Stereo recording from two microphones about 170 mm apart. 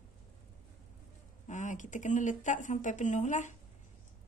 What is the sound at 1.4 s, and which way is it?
Speech, 45° left (ahead or behind).